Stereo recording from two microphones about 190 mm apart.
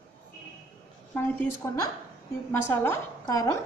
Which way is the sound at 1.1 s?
15° left (ahead or behind).